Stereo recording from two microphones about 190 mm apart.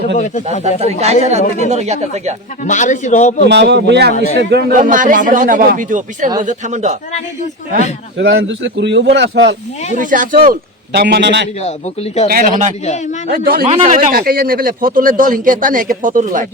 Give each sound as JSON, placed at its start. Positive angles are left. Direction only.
{"t": 0.8, "sound": "speech", "side_deg": -35}
{"t": 1.4, "sound": "a man's voice", "side_deg": 40}
{"t": 1.7, "sound": "speech", "side_deg": -35}
{"t": 2.6, "sound": "a man's voice", "side_deg": 40}
{"t": 3.4, "sound": "speech", "side_deg": -65}
{"t": 4.8, "sound": "speech", "side_deg": -45}
{"t": 8.2, "sound": "a man's voice", "side_deg": -75}
{"t": 10.0, "sound": "speech", "side_deg": -45}
{"t": 12.3, "sound": "speech", "side_deg": -45}